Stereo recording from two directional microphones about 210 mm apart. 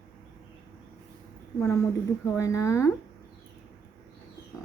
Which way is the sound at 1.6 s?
15° left (ahead or behind).